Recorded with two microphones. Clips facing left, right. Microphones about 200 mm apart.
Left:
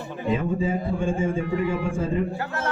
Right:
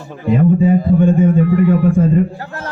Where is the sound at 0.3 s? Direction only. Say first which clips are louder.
Right 14 dB; 60° right (ahead or behind).